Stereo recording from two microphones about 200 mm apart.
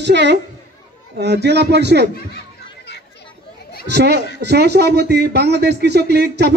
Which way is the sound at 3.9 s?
60° right (ahead or behind).